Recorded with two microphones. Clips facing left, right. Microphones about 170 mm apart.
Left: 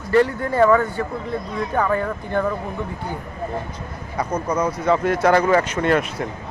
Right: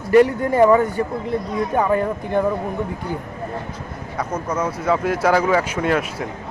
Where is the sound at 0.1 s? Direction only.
15° right (ahead or behind).